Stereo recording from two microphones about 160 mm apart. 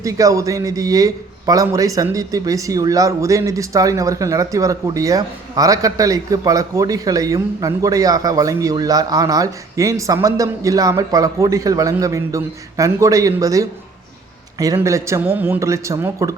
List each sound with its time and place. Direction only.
0.0 s a man's voice: 20° right (ahead or behind)